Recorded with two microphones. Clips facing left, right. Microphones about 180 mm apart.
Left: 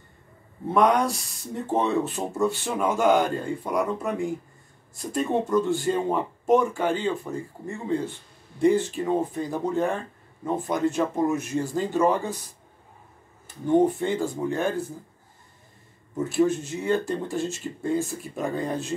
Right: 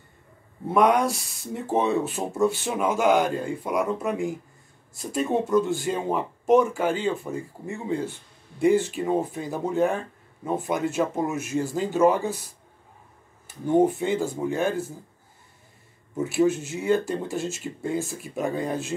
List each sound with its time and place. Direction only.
0.7 s speech: 5° right (ahead or behind)
13.7 s speech: 5° right (ahead or behind)
16.2 s speech: 5° right (ahead or behind)